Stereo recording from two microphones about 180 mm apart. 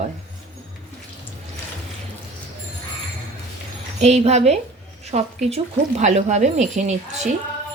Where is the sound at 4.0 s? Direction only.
35° right (ahead or behind).